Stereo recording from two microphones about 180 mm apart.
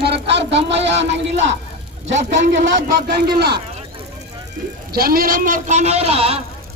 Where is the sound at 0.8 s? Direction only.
80° right.